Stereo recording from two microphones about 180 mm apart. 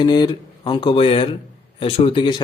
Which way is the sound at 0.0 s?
25° left (ahead or behind).